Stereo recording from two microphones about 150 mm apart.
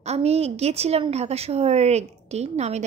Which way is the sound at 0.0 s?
45° right (ahead or behind).